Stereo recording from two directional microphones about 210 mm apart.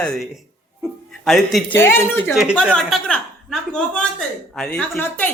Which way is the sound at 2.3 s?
Centre (ahead or behind).